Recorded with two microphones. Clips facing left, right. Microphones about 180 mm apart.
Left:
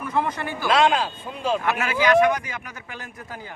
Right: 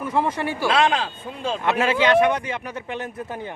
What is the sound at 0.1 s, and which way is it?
Speech, 25° right (ahead or behind).